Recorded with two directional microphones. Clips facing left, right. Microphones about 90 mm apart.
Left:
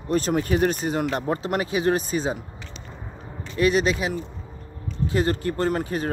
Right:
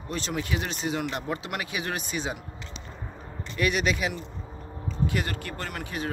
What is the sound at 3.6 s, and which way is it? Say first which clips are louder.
Speech: left 5 dB; 30° left (ahead or behind).